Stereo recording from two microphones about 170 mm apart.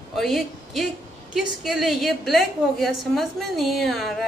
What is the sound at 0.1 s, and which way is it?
A woman's voice, centre (ahead or behind).